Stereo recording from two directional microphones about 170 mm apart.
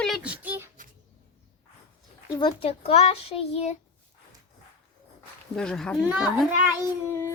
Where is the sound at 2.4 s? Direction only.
30° left (ahead or behind).